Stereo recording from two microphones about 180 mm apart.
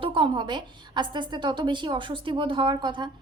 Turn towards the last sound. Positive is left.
turn(degrees=-25)  # may be behind; listen again after turning